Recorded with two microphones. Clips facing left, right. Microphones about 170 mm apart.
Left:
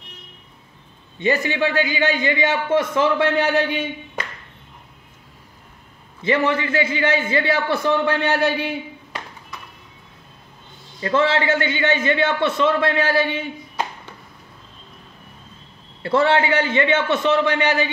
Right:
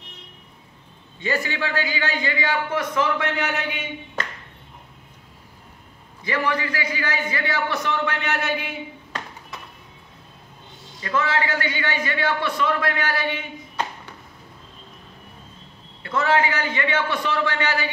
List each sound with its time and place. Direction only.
1.2 s a man's voice: 20° left (ahead or behind)
6.2 s a man's voice: 25° left (ahead or behind)
11.0 s a man's voice: 30° left (ahead or behind)
16.0 s a man's voice: 30° left (ahead or behind)